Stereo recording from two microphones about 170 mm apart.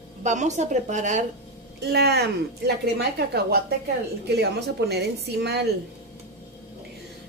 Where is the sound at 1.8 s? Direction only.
75° right (ahead or behind).